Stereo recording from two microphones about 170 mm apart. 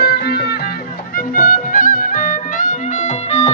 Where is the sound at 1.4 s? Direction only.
50° left (ahead or behind).